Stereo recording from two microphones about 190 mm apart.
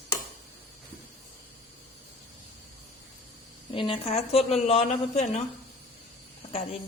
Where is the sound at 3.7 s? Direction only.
30° left (ahead or behind).